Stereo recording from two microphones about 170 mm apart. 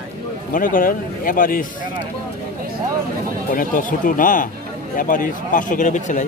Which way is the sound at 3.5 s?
55° left (ahead or behind).